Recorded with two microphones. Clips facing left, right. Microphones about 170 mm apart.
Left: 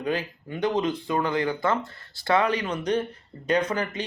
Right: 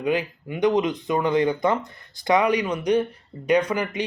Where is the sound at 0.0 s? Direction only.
15° right (ahead or behind).